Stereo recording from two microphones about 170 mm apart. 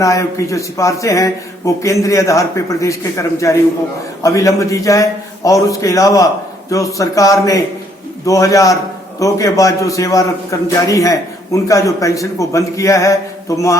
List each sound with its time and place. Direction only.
0.0 s a man's voice: 20° left (ahead or behind)